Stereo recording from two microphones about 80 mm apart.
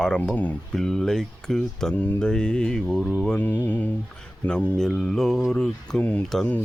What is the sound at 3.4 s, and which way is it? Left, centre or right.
Speech, centre.